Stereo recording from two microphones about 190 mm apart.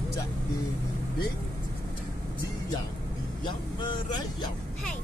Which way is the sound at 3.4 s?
25° left (ahead or behind).